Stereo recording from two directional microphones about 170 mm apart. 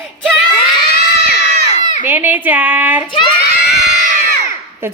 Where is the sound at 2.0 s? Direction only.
10° right (ahead or behind).